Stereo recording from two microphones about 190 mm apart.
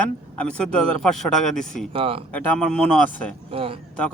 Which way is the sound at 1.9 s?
30° right (ahead or behind).